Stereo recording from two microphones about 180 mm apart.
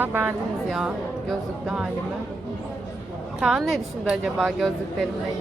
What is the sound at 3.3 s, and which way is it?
A woman's voice, 5° right (ahead or behind).